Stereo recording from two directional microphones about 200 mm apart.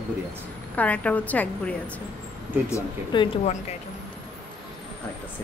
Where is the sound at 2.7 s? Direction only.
25° left (ahead or behind).